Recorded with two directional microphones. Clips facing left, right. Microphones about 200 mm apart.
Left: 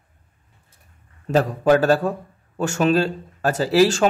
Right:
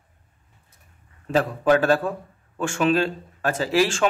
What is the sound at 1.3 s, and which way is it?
Speech, 40° left (ahead or behind).